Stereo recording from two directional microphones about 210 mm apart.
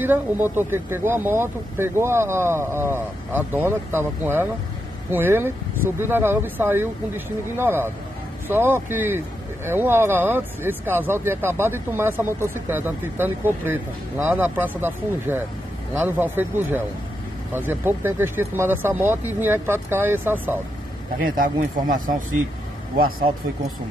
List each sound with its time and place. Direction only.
0.0 s speech: 10° right (ahead or behind)
21.2 s speech: 40° right (ahead or behind)